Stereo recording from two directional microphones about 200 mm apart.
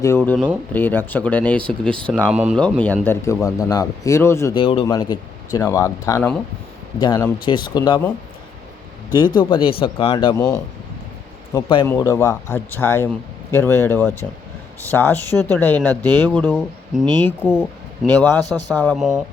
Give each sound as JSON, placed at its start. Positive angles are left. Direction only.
{"t": 0.0, "sound": "speech", "side_deg": 10}
{"t": 2.3, "sound": "speech", "side_deg": -5}
{"t": 2.6, "sound": "speech", "side_deg": 5}
{"t": 4.5, "sound": "speech", "side_deg": 25}
{"t": 9.1, "sound": "speech", "side_deg": 20}
{"t": 10.3, "sound": "speech", "side_deg": 15}